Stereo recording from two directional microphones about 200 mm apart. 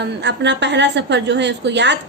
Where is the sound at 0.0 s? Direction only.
60° right (ahead or behind).